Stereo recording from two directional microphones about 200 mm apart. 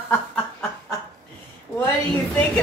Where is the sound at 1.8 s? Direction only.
10° left (ahead or behind).